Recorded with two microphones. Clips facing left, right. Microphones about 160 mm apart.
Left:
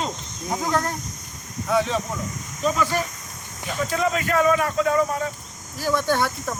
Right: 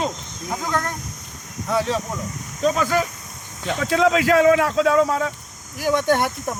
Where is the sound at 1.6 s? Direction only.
Centre (ahead or behind).